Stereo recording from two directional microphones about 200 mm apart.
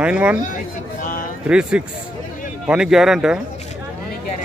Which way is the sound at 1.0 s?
45° left (ahead or behind).